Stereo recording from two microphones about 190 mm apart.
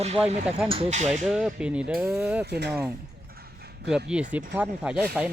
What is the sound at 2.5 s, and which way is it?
Speech, 60° right (ahead or behind).